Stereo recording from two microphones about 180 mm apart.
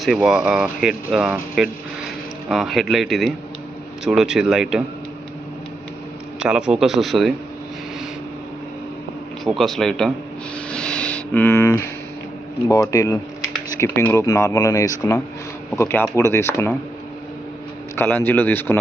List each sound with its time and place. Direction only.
0.0 s speech: centre (ahead or behind)
6.4 s speech: 5° right (ahead or behind)
9.4 s speech: centre (ahead or behind)
10.7 s a sound: 5° left (ahead or behind)
12.6 s speech: 20° left (ahead or behind)
17.9 s speech: 10° left (ahead or behind)